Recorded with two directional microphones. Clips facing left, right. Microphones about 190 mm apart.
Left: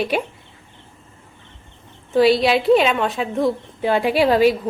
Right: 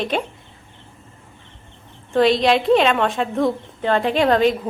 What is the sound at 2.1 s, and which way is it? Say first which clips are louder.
A woman's voice: left 1 dB; 5° left (ahead or behind).